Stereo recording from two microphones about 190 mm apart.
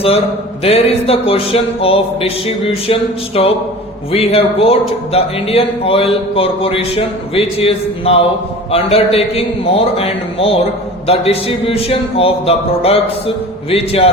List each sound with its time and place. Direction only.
0.6 s a man's voice: 30° left (ahead or behind)